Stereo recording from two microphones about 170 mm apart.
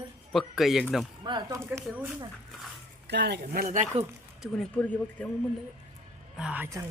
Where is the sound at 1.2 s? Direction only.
25° right (ahead or behind).